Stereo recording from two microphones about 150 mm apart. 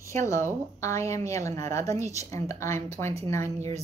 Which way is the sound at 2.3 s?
20° left (ahead or behind).